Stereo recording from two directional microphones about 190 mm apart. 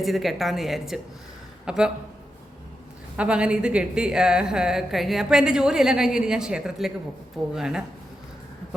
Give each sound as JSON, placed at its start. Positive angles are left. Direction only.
{"t": 0.0, "sound": "a woman's voice", "side_deg": 0}
{"t": 3.2, "sound": "a woman's voice", "side_deg": -5}